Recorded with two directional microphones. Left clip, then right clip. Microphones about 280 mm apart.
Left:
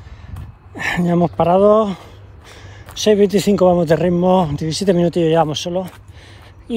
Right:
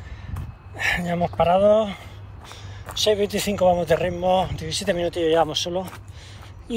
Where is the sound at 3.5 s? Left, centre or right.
Left.